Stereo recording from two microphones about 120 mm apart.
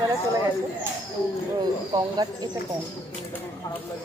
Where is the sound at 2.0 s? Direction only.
35° right (ahead or behind).